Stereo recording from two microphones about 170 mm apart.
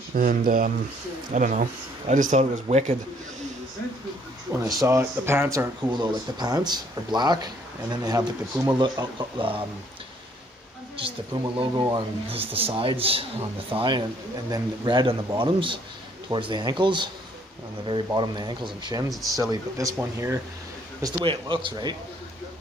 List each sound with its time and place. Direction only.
0.1 s speech: 55° right (ahead or behind)
4.5 s speech: 20° right (ahead or behind)
5.9 s speech: 25° right (ahead or behind)
11.0 s speech: 30° right (ahead or behind); by 20.3 s 15° right (ahead or behind)
21.0 s speech: 30° right (ahead or behind)